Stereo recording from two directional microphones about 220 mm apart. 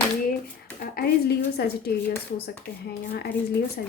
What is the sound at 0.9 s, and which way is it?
Speech, 45° left (ahead or behind).